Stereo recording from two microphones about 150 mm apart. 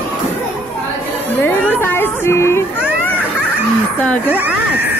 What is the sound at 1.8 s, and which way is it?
Speech, 15° left (ahead or behind).